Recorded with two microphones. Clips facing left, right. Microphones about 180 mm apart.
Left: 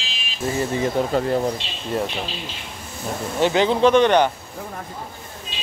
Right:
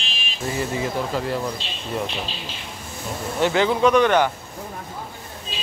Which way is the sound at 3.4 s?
20° left (ahead or behind).